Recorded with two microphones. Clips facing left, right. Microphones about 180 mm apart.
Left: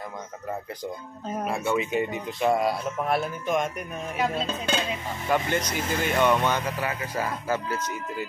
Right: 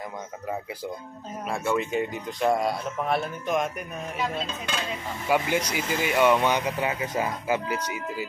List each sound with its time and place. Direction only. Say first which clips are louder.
1.4 s speech: even; centre (ahead or behind)
5.3 s speech: right 1 dB; 10° right (ahead or behind)